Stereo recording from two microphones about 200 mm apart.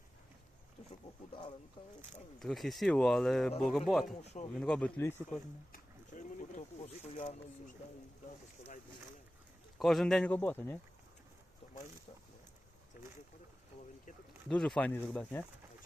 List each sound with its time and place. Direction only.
2.1 s speech: centre (ahead or behind)
4.0 s speech: 35° left (ahead or behind)
4.5 s speech: 5° left (ahead or behind)
5.7 s a sound: 40° left (ahead or behind)
6.8 s speech: 35° left (ahead or behind)
9.7 s speech: centre (ahead or behind)
11.6 s boat: 35° left (ahead or behind)
14.4 s speech: 5° left (ahead or behind)